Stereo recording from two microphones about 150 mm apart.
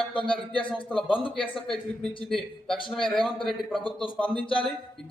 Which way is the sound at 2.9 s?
35° left (ahead or behind).